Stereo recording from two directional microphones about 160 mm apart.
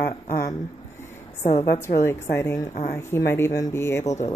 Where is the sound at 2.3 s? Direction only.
15° left (ahead or behind).